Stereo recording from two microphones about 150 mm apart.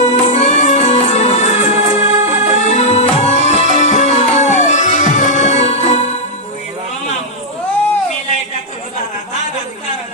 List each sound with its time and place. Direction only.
0.1 s music: 50° left (ahead or behind)